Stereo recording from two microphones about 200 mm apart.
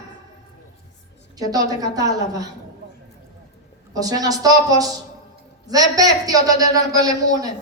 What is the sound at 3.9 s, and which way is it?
A woman's voice, 20° right (ahead or behind).